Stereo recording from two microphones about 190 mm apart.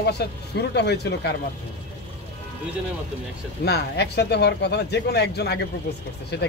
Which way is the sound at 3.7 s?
60° left (ahead or behind).